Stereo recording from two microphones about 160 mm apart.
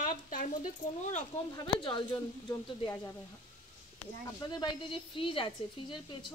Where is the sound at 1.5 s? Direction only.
30° left (ahead or behind).